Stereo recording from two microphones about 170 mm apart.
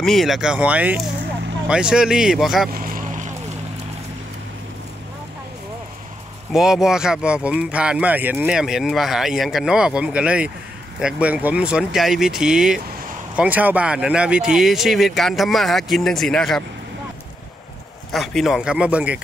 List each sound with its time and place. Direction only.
0.0 s speech: centre (ahead or behind)
2.7 s boat: 55° right (ahead or behind)
6.5 s speech: 5° right (ahead or behind)
18.1 s speech: centre (ahead or behind)